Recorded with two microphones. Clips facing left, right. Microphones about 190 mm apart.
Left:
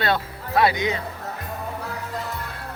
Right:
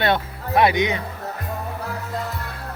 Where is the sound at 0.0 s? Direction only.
20° right (ahead or behind).